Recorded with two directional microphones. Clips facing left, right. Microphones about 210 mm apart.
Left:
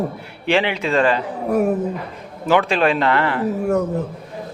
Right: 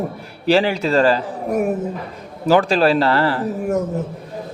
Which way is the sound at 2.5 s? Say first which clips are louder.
Right 2 dB; 40° right (ahead or behind).